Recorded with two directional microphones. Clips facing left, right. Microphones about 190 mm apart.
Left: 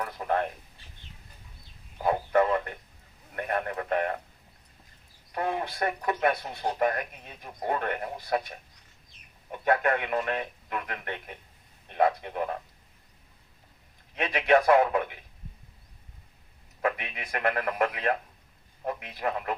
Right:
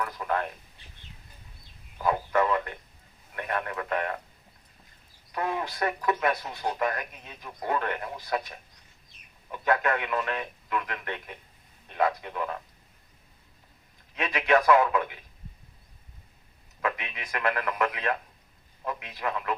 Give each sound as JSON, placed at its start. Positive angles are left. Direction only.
{"t": 0.0, "sound": "speech", "side_deg": 30}
{"t": 2.0, "sound": "a sound", "side_deg": 30}
{"t": 3.3, "sound": "speech", "side_deg": 35}
{"t": 5.5, "sound": "speech", "side_deg": 35}
{"t": 14.2, "sound": "speech", "side_deg": 30}
{"t": 17.3, "sound": "speech", "side_deg": 30}